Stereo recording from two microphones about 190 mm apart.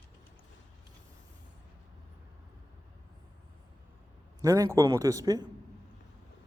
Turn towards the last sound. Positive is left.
turn(degrees=-20)  # may be behind; listen again after turning